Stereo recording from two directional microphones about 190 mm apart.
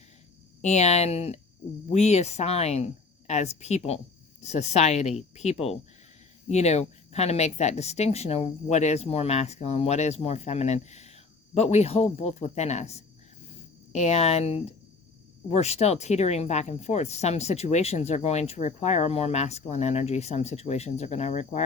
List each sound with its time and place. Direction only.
0.6 s speech: 35° left (ahead or behind)